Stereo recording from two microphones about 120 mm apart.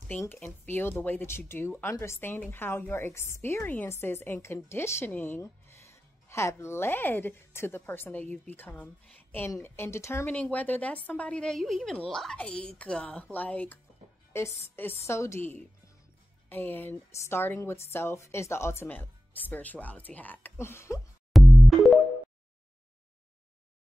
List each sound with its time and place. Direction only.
0.1 s speech: 15° left (ahead or behind)
10.3 s a woman's voice: 10° left (ahead or behind)
14.3 s a woman's voice: 20° left (ahead or behind)
21.3 s music: centre (ahead or behind)